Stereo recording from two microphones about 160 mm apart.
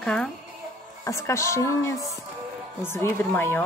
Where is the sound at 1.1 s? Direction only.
15° left (ahead or behind).